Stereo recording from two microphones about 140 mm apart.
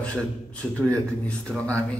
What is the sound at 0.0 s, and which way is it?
A man's voice, 10° left (ahead or behind).